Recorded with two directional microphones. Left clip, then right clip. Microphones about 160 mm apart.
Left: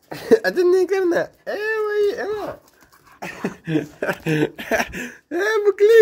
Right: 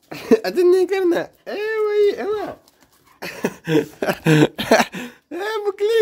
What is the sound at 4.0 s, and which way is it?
Speech, 45° right (ahead or behind).